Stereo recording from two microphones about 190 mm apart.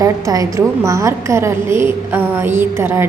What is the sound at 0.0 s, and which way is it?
A woman's voice, 20° right (ahead or behind).